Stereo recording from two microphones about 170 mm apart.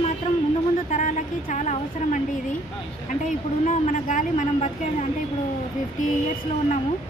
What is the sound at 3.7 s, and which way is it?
A woman's voice, 50° left (ahead or behind).